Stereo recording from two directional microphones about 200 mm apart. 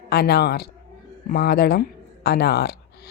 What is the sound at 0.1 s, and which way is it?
A woman's voice, 55° left (ahead or behind).